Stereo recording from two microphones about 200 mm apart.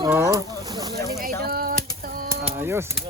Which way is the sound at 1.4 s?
50° right (ahead or behind).